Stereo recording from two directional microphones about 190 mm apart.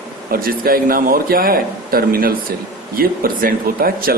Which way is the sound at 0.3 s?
50° right (ahead or behind).